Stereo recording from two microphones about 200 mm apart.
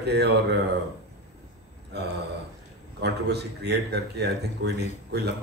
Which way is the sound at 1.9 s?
55° right (ahead or behind).